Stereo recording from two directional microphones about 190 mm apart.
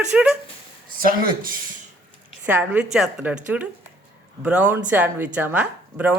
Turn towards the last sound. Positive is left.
turn(degrees=-10)  # may be behind; listen again after turning